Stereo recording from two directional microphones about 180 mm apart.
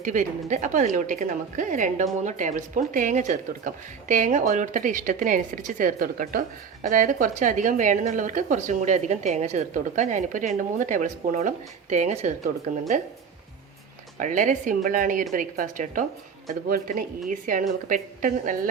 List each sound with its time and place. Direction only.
0.0 s speech: 45° right (ahead or behind)
14.2 s speech: 45° right (ahead or behind)